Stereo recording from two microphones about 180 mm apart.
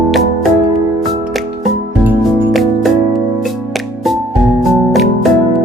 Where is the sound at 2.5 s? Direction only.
Centre (ahead or behind).